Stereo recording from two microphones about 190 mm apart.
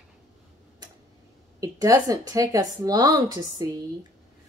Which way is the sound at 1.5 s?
15° right (ahead or behind).